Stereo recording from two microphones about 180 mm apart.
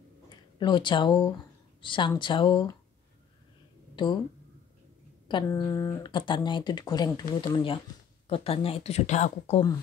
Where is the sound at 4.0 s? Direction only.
25° left (ahead or behind).